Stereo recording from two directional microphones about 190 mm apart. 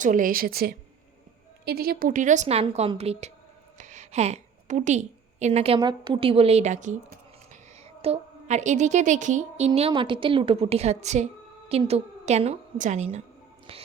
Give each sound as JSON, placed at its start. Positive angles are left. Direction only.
{"t": 0.0, "sound": "a woman's voice", "side_deg": -45}
{"t": 8.0, "sound": "a woman's voice", "side_deg": -35}